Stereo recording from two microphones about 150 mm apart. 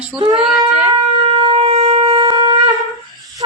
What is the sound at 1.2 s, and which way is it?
Shofar, 35° right (ahead or behind).